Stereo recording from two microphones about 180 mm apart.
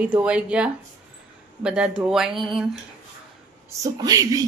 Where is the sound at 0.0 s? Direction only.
5° right (ahead or behind).